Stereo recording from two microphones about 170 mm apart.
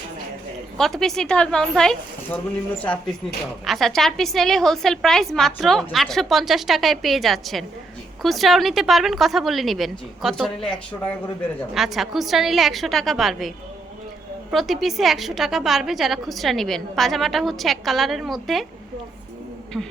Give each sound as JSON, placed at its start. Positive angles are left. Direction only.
{"t": 0.8, "sound": "a woman's voice", "side_deg": 0}
{"t": 11.7, "sound": "a woman's voice", "side_deg": 0}
{"t": 14.5, "sound": "a woman's voice", "side_deg": 0}
{"t": 19.7, "sound": "a woman's voice", "side_deg": 0}